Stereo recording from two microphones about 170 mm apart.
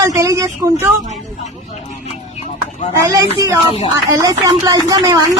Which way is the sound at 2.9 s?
20° right (ahead or behind).